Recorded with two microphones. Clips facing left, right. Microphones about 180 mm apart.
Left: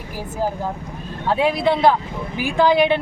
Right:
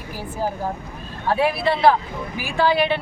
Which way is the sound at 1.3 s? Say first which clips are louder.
Left 2 dB; 20° left (ahead or behind).